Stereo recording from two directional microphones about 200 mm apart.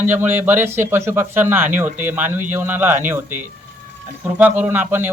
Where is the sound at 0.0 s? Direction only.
10° right (ahead or behind).